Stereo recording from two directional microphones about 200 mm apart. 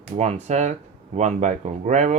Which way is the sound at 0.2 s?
35° right (ahead or behind).